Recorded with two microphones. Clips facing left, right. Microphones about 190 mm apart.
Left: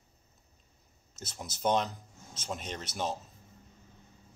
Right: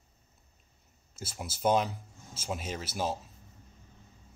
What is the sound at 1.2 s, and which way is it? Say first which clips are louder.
Speech: right 2 dB; 5° right (ahead or behind).